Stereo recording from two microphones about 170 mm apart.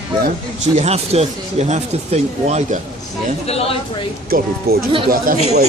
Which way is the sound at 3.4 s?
35° left (ahead or behind).